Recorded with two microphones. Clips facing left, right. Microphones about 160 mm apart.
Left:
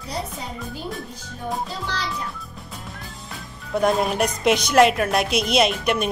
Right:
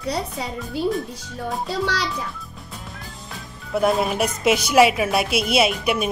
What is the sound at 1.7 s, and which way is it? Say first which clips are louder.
Speech: right 6 dB; 80° right.